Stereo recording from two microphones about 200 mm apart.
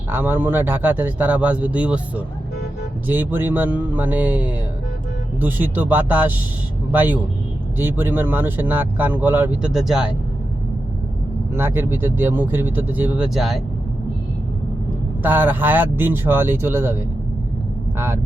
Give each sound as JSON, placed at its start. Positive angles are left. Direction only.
{"t": 0.1, "sound": "speech", "side_deg": -10}
{"t": 11.5, "sound": "speech", "side_deg": -10}
{"t": 15.2, "sound": "speech", "side_deg": -10}